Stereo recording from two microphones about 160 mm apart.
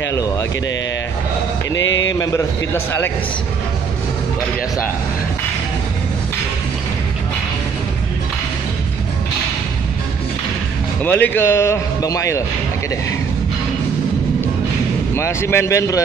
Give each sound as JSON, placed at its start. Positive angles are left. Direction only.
{"t": 0.1, "sound": "speech", "side_deg": 20}
{"t": 2.1, "sound": "speech", "side_deg": 15}
{"t": 11.1, "sound": "speech", "side_deg": 10}
{"t": 15.1, "sound": "speech", "side_deg": 15}